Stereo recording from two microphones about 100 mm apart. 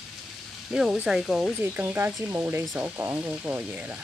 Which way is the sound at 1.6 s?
20° right (ahead or behind).